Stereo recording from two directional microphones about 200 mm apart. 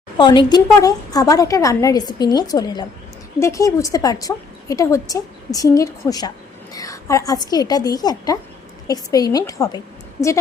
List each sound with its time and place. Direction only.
0.2 s a woman's voice: 20° left (ahead or behind)